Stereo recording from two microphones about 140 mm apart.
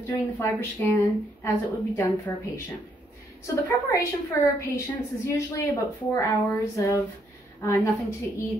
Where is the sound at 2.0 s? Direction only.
10° left (ahead or behind).